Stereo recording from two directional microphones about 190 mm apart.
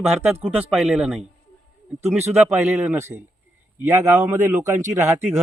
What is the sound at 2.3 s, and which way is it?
Speech, 10° right (ahead or behind).